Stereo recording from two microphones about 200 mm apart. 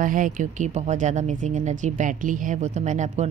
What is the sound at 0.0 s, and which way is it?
Speech, 40° right (ahead or behind).